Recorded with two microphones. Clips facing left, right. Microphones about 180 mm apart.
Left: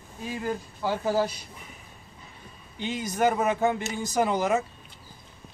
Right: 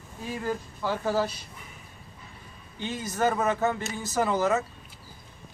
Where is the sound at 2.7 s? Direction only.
15° left (ahead or behind).